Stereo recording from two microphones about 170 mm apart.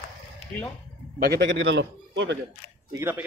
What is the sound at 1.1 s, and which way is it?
A man's voice, 65° right (ahead or behind).